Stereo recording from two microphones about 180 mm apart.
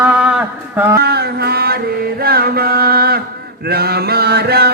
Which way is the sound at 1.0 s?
60° right (ahead or behind).